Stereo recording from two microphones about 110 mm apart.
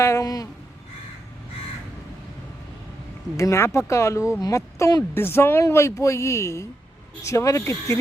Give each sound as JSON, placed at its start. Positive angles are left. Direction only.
{"t": 0.0, "sound": "speech", "side_deg": 30}
{"t": 3.3, "sound": "speech", "side_deg": 25}
{"t": 5.1, "sound": "speech", "side_deg": 20}